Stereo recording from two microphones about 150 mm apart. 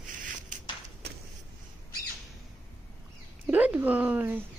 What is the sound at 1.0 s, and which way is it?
Vehicle, 90° right.